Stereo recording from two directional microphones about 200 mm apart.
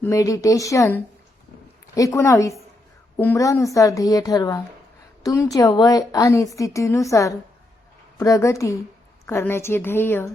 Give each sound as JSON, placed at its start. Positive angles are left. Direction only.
{"t": 0.0, "sound": "a woman's voice", "side_deg": 15}